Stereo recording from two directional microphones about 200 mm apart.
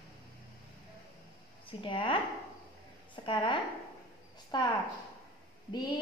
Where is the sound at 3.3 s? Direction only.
25° left (ahead or behind).